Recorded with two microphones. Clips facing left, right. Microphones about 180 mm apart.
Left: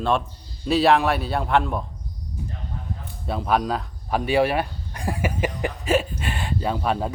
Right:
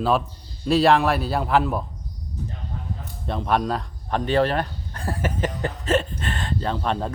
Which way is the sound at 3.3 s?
5° left (ahead or behind).